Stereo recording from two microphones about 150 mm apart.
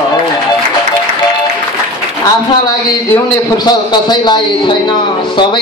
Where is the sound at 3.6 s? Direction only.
30° left (ahead or behind).